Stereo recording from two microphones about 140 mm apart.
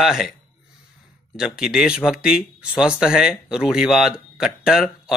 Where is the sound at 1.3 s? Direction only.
5° right (ahead or behind).